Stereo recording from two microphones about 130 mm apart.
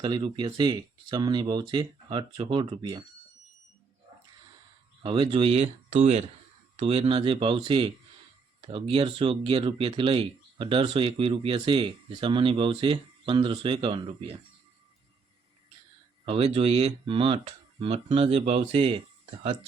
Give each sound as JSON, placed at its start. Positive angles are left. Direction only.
{"t": 0.0, "sound": "speech", "side_deg": -35}
{"t": 5.0, "sound": "speech", "side_deg": -40}
{"t": 6.7, "sound": "speech", "side_deg": -50}
{"t": 16.2, "sound": "speech", "side_deg": -45}